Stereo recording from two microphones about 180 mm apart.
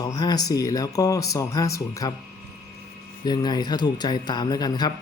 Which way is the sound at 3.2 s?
25° left (ahead or behind).